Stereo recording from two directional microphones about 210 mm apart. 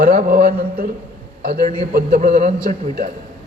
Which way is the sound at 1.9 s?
40° right (ahead or behind).